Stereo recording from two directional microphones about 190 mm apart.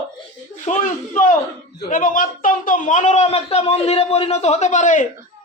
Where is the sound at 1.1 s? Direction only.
40° left (ahead or behind).